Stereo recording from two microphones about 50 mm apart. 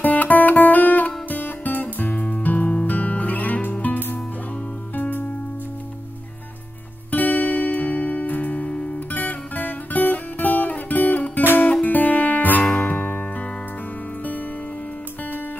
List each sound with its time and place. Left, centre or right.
0.0 s guitar: left
2.9 s music: left
7.1 s music: left
12.8 s music: left